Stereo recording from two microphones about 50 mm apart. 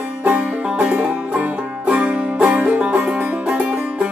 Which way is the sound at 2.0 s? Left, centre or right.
Right.